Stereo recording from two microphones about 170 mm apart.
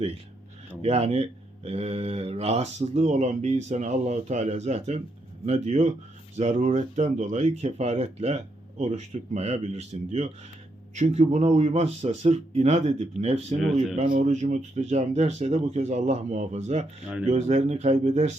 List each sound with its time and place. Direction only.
0.8 s speech: 40° right (ahead or behind)